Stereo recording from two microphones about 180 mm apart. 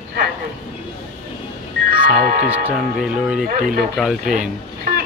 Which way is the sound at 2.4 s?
10° right (ahead or behind).